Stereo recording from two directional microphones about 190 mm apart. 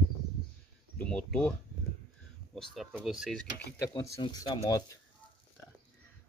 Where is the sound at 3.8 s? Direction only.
20° left (ahead or behind).